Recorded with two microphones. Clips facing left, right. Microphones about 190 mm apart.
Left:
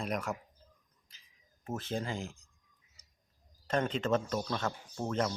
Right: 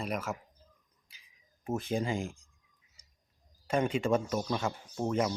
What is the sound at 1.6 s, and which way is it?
Speech, 15° right (ahead or behind).